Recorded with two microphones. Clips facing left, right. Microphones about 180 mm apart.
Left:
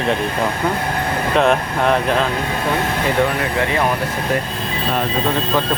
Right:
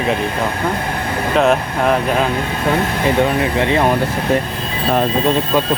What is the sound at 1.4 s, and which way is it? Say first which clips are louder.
Speech: right 2 dB; centre (ahead or behind).